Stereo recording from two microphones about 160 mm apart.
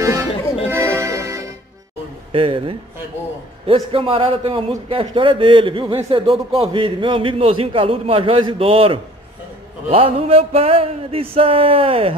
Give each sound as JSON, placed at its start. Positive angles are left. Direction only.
{"t": 0.0, "sound": "music", "side_deg": -20}
{"t": 2.3, "sound": "a man's voice", "side_deg": -35}